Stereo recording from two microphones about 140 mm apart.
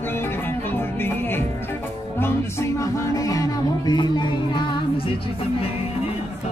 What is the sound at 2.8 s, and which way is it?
Music, 25° left (ahead or behind).